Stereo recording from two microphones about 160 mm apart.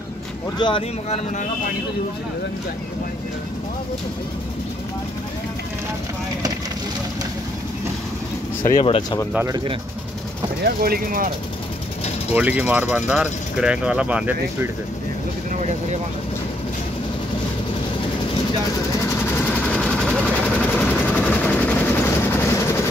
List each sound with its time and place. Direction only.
0.6 s speech: 30° left (ahead or behind)
8.8 s speech: 35° left (ahead or behind)
10.6 s speech: 70° right (ahead or behind)
12.4 s speech: 10° right (ahead or behind)
19.8 s vehicle: 5° left (ahead or behind)